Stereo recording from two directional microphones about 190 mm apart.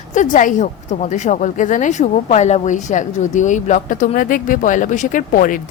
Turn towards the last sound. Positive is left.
turn(degrees=45)  # may be behind; listen again after turning